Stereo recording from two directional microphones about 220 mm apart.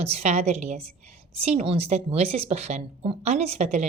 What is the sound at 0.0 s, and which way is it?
A woman's voice, 30° right (ahead or behind).